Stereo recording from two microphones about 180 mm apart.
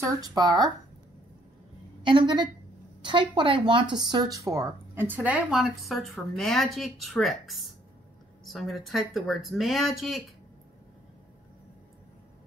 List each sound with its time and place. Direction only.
0.0 s speech: 20° right (ahead or behind)
2.0 s speech: 25° right (ahead or behind); by 10.2 s centre (ahead or behind)